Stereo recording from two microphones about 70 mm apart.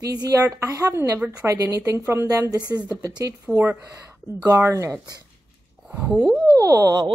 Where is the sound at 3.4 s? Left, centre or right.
Right.